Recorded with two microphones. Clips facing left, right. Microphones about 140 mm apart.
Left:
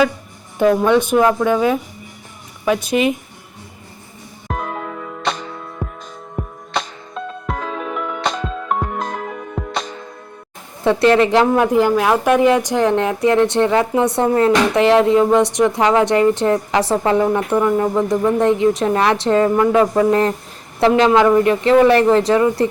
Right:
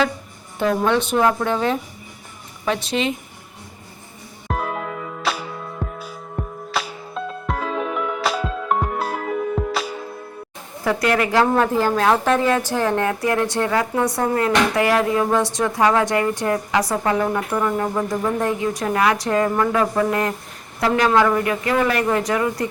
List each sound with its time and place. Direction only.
0.9 s speech: 10° left (ahead or behind)
4.4 s music: 5° right (ahead or behind)
10.8 s a woman's voice: 25° left (ahead or behind)